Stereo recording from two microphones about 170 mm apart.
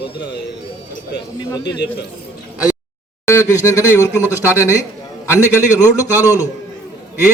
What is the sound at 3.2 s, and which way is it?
Speech, 15° left (ahead or behind).